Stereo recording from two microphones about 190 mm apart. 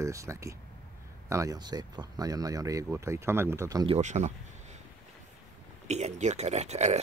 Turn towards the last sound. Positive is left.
turn(degrees=-35)  # may be behind; listen again after turning